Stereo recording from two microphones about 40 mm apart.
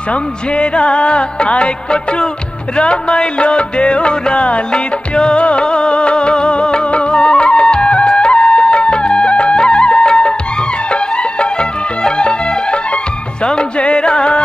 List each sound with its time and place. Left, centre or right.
0.1 s music: left
12.0 s music: left